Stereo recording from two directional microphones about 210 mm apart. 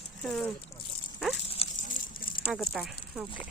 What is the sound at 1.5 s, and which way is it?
Dog, 35° left (ahead or behind).